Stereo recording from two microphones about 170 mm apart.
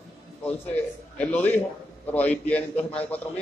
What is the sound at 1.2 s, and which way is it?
A man's voice, 10° left (ahead or behind).